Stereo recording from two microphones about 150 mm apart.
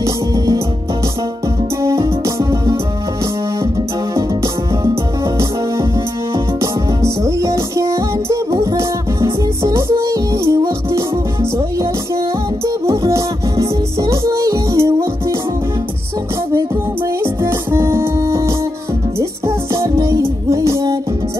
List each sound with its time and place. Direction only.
1.8 s music: 20° right (ahead or behind)
6.3 s music: 20° right (ahead or behind)
12.6 s music: 20° right (ahead or behind)
17.2 s music: 15° right (ahead or behind)